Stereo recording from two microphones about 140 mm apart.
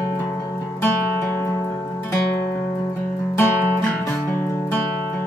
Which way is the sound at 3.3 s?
15° left (ahead or behind).